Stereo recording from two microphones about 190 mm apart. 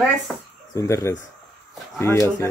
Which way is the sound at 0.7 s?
15° left (ahead or behind).